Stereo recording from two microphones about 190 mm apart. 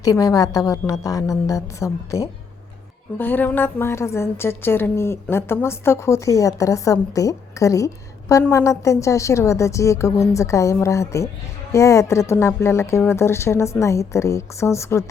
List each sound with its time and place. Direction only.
0.0 s a woman's voice: 20° left (ahead or behind)